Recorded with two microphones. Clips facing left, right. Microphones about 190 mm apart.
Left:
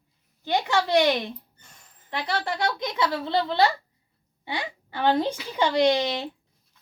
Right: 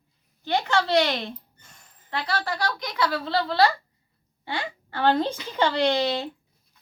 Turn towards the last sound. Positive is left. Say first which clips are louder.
# left 1 dB
turn(degrees=15)  # may be behind; listen again after turning